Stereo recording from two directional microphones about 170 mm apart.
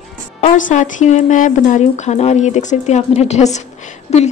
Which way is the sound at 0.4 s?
45° left (ahead or behind).